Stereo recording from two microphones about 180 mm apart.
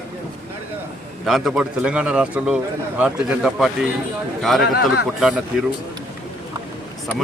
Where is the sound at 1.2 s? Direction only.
Centre (ahead or behind).